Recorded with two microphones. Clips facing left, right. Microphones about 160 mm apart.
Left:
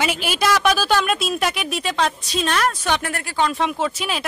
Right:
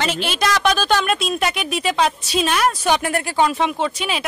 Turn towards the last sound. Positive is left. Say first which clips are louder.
# right 1 dB
turn(degrees=0)  # may be behind; listen again after turning